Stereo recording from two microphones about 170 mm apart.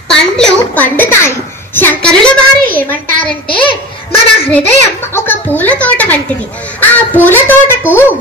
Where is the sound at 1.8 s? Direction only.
10° left (ahead or behind).